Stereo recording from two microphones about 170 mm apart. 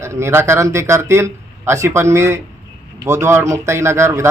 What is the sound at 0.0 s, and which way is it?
Speech, 15° right (ahead or behind).